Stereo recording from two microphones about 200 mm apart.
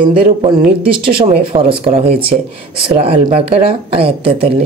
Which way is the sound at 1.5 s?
20° right (ahead or behind).